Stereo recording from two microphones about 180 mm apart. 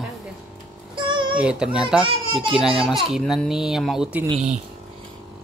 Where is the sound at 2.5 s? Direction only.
5° right (ahead or behind).